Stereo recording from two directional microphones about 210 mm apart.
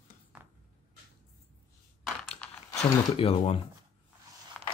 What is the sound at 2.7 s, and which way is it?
Speech, 30° left (ahead or behind).